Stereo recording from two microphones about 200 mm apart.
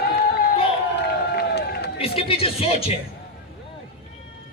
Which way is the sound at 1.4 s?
60° left (ahead or behind).